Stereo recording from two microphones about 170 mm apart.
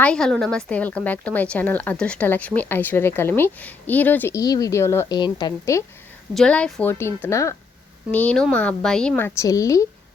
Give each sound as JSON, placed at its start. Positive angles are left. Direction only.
{"t": 0.0, "sound": "speech", "side_deg": 5}
{"t": 6.3, "sound": "a woman's voice", "side_deg": 5}
{"t": 7.0, "sound": "speech", "side_deg": 15}